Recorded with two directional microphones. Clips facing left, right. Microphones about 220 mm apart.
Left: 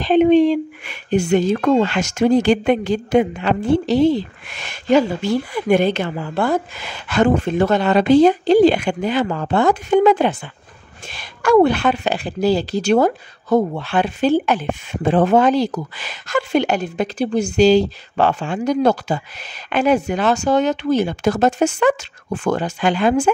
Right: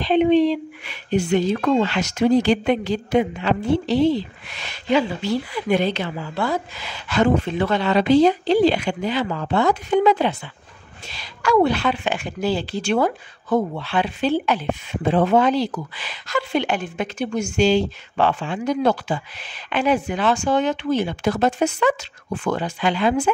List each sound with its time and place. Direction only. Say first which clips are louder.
0.0 s a woman's voice: left 4 dB; 45° left (ahead or behind)